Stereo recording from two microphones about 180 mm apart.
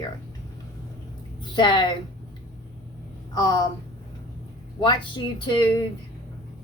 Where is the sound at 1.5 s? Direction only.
25° left (ahead or behind).